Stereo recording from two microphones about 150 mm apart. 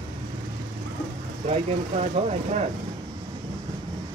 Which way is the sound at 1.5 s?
45° right (ahead or behind).